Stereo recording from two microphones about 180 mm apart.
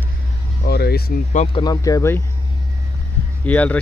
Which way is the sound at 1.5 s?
20° left (ahead or behind).